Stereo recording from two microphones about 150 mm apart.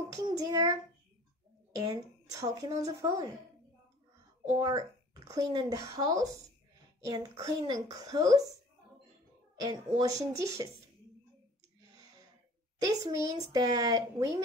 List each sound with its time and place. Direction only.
0.1 s speech: 25° right (ahead or behind)
1.9 s speech: 25° right (ahead or behind)
4.6 s speech: 25° right (ahead or behind)
9.6 s speech: 25° right (ahead or behind)
12.8 s speech: 20° right (ahead or behind)